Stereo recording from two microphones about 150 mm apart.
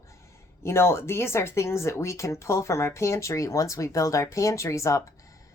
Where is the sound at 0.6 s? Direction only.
15° left (ahead or behind).